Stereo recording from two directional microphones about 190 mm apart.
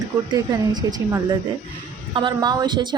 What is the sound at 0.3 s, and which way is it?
A woman's voice, 20° right (ahead or behind).